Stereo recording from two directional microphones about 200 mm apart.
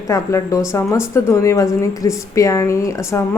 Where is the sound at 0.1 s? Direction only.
15° left (ahead or behind).